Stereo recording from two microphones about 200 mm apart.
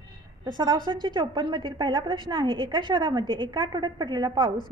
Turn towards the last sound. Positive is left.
turn(degrees=-20)  # may be behind; listen again after turning